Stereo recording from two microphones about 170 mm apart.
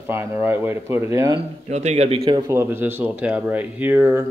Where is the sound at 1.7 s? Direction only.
40° right (ahead or behind).